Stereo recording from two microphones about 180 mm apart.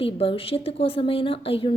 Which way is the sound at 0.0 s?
30° left (ahead or behind).